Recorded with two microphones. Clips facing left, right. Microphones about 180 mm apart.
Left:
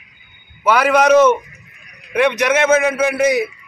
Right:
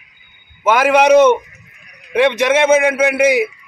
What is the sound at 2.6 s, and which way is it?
Speech, 10° right (ahead or behind).